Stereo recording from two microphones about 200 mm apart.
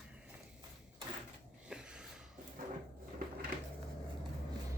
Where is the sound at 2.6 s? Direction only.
45° right (ahead or behind).